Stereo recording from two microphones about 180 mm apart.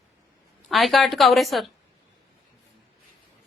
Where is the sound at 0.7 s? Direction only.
Centre (ahead or behind).